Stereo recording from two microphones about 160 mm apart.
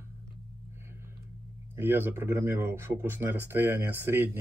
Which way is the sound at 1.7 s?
15° right (ahead or behind).